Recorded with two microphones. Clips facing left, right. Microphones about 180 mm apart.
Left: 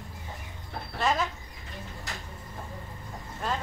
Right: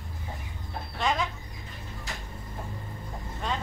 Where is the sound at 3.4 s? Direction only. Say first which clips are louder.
Left 1 dB; 5° left (ahead or behind).